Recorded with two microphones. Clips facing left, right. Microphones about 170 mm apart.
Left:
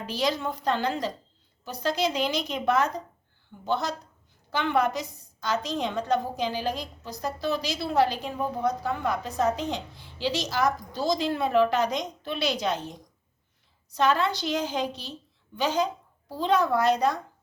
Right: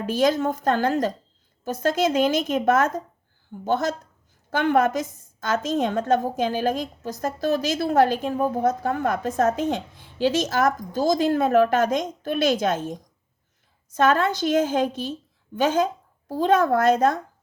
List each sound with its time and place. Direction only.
0.0 s a woman's voice: 50° right (ahead or behind)